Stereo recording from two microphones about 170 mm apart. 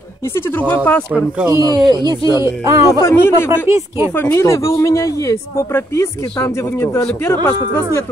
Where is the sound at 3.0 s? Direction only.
15° left (ahead or behind).